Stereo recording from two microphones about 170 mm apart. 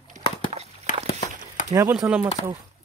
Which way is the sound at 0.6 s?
40° right (ahead or behind).